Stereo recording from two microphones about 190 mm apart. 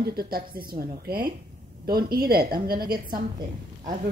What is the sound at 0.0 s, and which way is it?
A woman's voice, 55° right (ahead or behind).